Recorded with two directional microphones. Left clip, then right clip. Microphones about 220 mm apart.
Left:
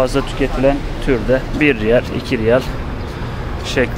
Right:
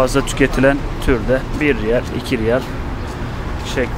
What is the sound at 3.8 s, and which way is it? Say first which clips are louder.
Speech: left 4 dB; 15° left (ahead or behind).